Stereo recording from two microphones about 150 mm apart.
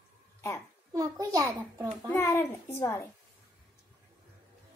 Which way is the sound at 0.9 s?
25° right (ahead or behind).